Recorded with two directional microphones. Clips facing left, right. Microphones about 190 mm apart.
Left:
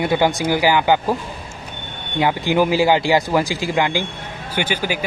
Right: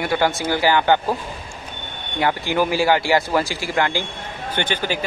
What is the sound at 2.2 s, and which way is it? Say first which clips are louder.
A man's voice: left 3 dB; 15° left (ahead or behind).